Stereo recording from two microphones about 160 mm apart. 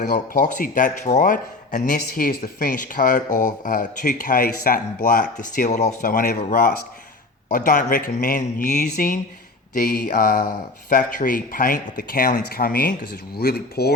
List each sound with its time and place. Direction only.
0.0 s speech: 50° left (ahead or behind)
7.4 s speech: 55° left (ahead or behind); by 13.9 s 80° left